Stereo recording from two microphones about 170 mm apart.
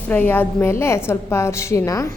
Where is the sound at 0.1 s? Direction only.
10° left (ahead or behind).